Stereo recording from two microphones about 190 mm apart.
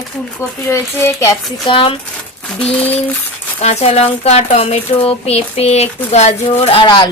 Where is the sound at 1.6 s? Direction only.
25° left (ahead or behind).